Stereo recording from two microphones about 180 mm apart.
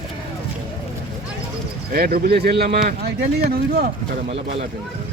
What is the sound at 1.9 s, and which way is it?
Speech, 55° right (ahead or behind).